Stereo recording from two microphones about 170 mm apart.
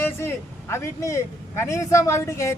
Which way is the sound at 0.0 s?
15° left (ahead or behind).